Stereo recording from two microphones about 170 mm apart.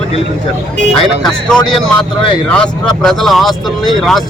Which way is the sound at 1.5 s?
5° left (ahead or behind).